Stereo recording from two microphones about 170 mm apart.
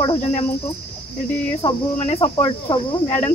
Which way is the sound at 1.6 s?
30° left (ahead or behind).